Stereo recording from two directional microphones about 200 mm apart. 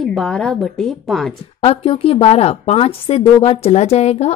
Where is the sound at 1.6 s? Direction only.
30° left (ahead or behind).